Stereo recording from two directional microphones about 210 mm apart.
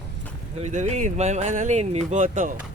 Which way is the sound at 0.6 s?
35° right (ahead or behind).